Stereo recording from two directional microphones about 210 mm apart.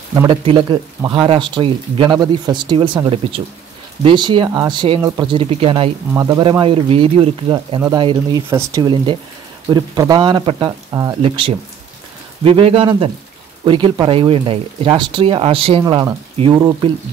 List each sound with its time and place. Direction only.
0.1 s speech: 20° right (ahead or behind)